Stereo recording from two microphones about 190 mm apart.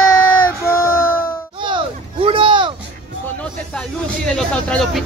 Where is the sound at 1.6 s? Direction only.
25° right (ahead or behind).